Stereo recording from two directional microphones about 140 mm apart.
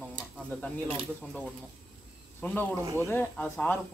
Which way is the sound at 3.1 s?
10° left (ahead or behind).